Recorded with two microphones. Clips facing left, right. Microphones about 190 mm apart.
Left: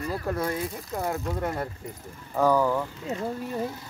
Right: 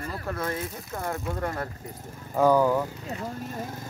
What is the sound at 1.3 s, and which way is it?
Speech, 10° left (ahead or behind).